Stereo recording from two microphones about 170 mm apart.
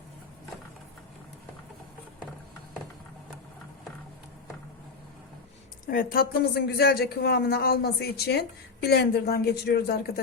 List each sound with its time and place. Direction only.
5.8 s speech: 55° left (ahead or behind)